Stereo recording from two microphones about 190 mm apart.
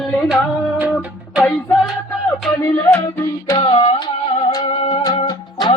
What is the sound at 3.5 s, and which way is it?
Music, 25° left (ahead or behind).